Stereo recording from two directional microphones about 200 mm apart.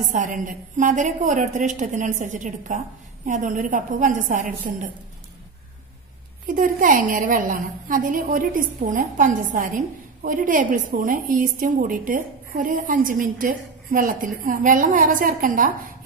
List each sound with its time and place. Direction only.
0.0 s a woman's voice: 40° right (ahead or behind)
6.4 s a woman's voice: 40° right (ahead or behind)